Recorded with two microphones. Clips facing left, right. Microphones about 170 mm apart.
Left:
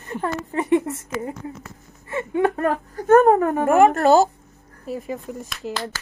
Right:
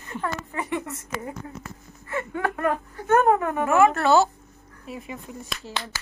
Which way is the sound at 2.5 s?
35° left (ahead or behind).